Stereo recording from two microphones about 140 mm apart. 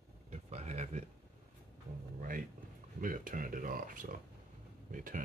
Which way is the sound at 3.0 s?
75° right (ahead or behind).